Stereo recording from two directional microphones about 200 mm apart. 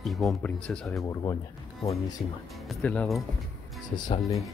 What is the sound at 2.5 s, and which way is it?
Speech, 5° left (ahead or behind).